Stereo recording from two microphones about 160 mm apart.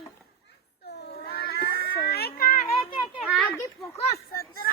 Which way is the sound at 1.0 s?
85° left.